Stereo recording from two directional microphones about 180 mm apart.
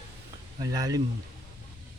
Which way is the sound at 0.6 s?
20° right (ahead or behind).